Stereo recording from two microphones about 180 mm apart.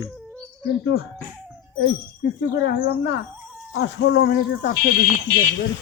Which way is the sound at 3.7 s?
80° left.